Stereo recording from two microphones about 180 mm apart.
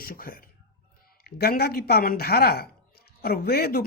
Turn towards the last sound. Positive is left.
turn(degrees=60)  # may be behind; listen again after turning